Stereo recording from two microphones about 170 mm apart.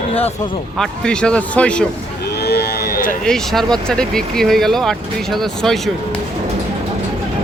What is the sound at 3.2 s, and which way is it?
Speech, centre (ahead or behind).